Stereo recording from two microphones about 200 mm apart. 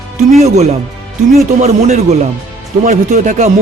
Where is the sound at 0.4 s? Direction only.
35° right (ahead or behind).